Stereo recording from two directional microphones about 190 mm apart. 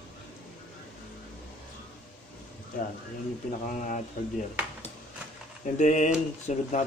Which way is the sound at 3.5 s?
40° left (ahead or behind).